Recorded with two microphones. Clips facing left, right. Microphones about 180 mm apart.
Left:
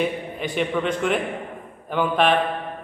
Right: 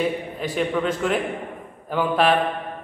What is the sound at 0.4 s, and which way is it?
A man's voice, centre (ahead or behind).